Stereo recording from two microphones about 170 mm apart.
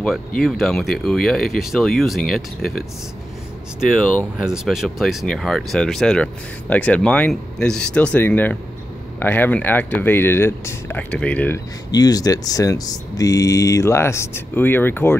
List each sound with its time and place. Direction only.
0.4 s speech: centre (ahead or behind)
4.5 s speech: centre (ahead or behind)
11.9 s speech: 20° left (ahead or behind)